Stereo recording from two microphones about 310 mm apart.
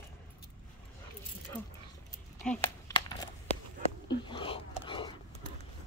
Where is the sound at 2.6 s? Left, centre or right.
Centre.